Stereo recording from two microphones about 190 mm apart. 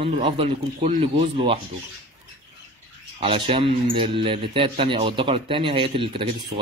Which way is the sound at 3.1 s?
30° right (ahead or behind).